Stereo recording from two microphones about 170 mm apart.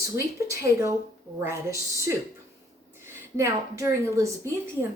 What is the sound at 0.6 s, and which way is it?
A woman's voice, 15° right (ahead or behind).